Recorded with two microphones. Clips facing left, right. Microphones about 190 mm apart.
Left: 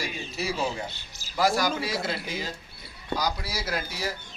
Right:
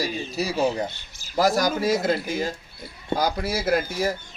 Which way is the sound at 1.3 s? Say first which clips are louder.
Right 4 dB; 40° right (ahead or behind).